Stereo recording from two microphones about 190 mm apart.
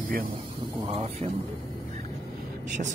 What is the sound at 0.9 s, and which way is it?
Speech, 30° right (ahead or behind).